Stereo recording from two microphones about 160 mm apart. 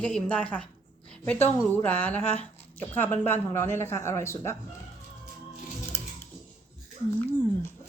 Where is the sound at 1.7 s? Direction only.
10° left (ahead or behind).